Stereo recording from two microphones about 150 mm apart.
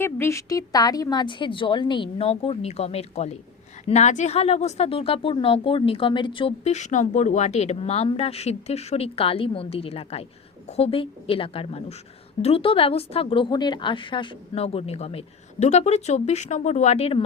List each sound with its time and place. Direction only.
0.0 s a woman's voice: 15° left (ahead or behind); by 6.5 s 35° left (ahead or behind)
6.7 s a woman's voice: 50° left (ahead or behind)